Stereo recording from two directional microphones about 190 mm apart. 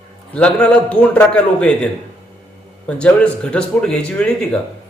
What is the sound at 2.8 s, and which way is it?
A man's voice, 5° left (ahead or behind).